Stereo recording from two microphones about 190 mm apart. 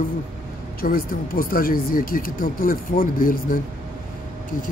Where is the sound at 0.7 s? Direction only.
50° left (ahead or behind).